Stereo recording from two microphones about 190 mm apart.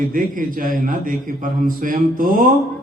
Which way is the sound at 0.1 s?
45° right (ahead or behind).